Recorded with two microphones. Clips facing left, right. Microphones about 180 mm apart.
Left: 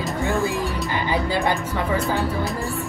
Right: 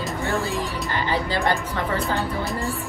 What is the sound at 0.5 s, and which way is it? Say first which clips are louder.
Music: left 2 dB; 15° left (ahead or behind).